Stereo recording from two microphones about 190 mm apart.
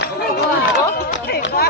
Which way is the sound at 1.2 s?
60° left (ahead or behind).